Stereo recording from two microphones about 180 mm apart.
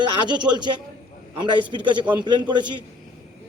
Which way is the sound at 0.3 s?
25° right (ahead or behind).